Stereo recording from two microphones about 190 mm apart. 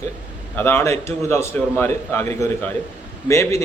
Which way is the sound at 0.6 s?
10° left (ahead or behind).